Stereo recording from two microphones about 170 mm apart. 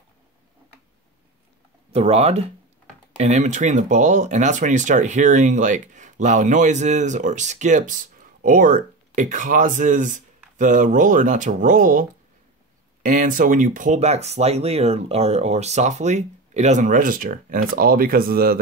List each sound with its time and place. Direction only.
1.9 s speech: 35° right (ahead or behind); by 18.6 s 60° right (ahead or behind)